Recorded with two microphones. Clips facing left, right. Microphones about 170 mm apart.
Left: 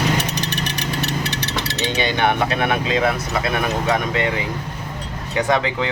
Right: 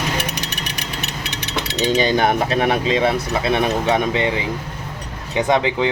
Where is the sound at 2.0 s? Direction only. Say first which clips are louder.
Right 1 dB; 40° right (ahead or behind); by 4.3 s 25° right (ahead or behind).